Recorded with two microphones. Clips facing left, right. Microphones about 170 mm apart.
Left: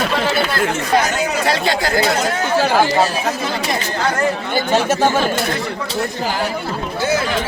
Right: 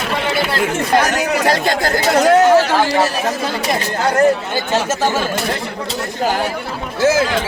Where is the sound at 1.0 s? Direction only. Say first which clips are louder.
Right 2 dB; 75° right (ahead or behind).